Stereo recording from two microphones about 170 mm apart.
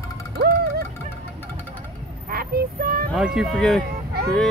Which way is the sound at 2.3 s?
60° right (ahead or behind).